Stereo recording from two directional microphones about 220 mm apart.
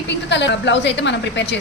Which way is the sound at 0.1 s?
55° left (ahead or behind).